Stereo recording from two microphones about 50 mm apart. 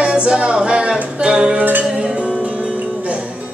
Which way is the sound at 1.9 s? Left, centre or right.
Centre.